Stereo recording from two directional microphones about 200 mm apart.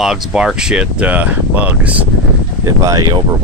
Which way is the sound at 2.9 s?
20° right (ahead or behind).